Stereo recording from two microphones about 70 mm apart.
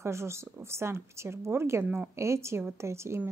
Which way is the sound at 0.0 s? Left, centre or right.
Right.